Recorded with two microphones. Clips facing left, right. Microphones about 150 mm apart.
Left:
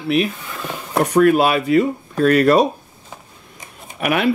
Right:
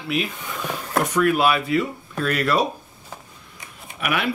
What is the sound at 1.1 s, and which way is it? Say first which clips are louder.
Speech: left 6 dB; 40° left (ahead or behind).